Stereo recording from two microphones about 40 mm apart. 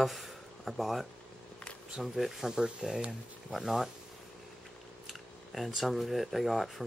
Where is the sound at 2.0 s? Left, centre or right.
Centre.